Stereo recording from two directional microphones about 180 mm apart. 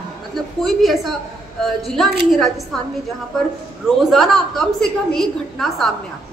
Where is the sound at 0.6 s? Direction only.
Centre (ahead or behind).